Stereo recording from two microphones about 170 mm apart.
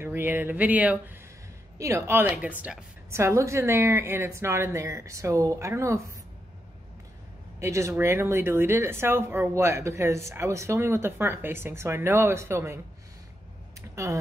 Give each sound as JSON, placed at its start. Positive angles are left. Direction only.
{"t": 0.0, "sound": "speech", "side_deg": -10}
{"t": 7.6, "sound": "speech", "side_deg": -15}
{"t": 13.7, "sound": "a sound", "side_deg": -15}